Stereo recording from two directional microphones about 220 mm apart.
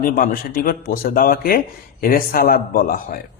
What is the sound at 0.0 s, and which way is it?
A man's voice, 40° left (ahead or behind).